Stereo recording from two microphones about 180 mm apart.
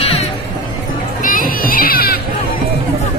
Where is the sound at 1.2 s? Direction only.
50° left (ahead or behind).